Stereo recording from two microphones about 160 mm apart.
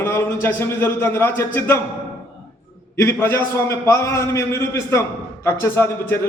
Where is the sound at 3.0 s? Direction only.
15° left (ahead or behind).